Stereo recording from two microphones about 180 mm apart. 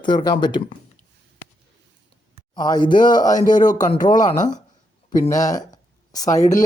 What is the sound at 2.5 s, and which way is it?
Speech, 25° left (ahead or behind).